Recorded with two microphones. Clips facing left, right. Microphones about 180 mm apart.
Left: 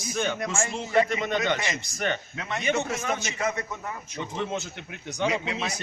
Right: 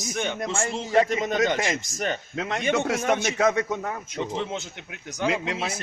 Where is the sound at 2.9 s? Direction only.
60° right (ahead or behind); by 3.9 s 80° right.